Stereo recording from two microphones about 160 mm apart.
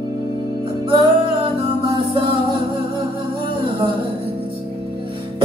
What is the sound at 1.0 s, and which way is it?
Music, 30° right (ahead or behind).